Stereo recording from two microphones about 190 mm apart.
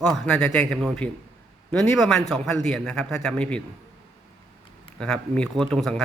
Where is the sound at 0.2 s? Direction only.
5° left (ahead or behind).